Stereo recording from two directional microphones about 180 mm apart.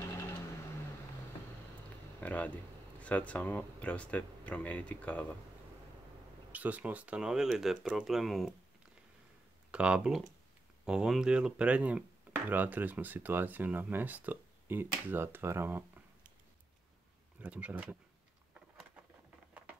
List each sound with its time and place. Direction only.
2.1 s speech: 10° left (ahead or behind)
6.5 s speech: 10° right (ahead or behind)
9.7 s speech: 5° right (ahead or behind)
17.4 s speech: 10° right (ahead or behind)